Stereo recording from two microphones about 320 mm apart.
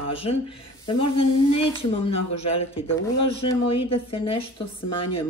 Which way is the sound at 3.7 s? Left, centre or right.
Left.